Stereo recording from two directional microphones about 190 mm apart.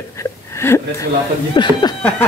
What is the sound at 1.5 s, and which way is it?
Speech, 25° left (ahead or behind).